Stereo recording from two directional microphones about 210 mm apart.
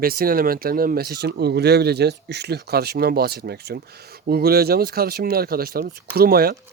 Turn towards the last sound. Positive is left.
turn(degrees=-45)  # may be behind; listen again after turning